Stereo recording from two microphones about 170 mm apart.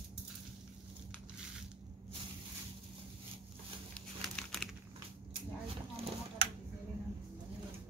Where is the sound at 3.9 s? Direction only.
5° left (ahead or behind).